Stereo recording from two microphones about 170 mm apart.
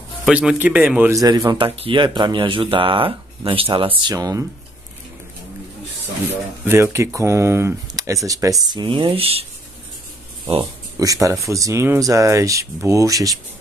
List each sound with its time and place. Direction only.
0.2 s speech: 5° right (ahead or behind)
1.2 s speech: 25° right (ahead or behind)
6.6 s speech: 15° right (ahead or behind); by 9.5 s 35° right (ahead or behind)
10.6 s speech: 20° right (ahead or behind)